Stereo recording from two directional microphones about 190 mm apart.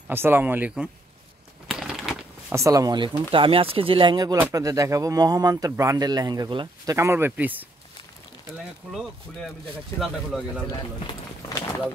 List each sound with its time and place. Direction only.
0.1 s speech: 10° right (ahead or behind)
1.7 s crumpling: centre (ahead or behind)
2.5 s speech: 15° right (ahead or behind)
8.8 s speech: 5° right (ahead or behind)
11.1 s run: 20° left (ahead or behind)